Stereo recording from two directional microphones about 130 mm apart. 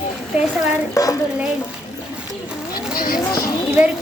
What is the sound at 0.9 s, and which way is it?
Speech, 25° left (ahead or behind).